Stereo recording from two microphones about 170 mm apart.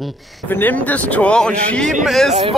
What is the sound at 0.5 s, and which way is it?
Speech, 10° left (ahead or behind).